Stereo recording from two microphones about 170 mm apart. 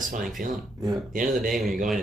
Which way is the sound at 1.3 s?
Centre (ahead or behind).